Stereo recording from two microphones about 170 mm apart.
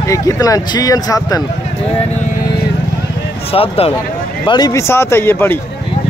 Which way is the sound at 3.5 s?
35° left (ahead or behind).